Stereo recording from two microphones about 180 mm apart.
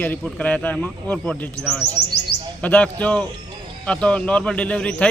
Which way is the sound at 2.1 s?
65° left (ahead or behind).